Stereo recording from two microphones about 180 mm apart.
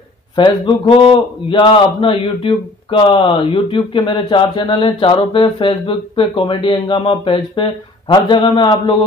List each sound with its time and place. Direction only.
0.4 s a man's voice: 25° left (ahead or behind)